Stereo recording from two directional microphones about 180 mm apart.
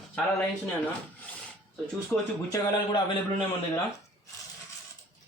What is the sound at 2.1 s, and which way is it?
Speech, 5° left (ahead or behind).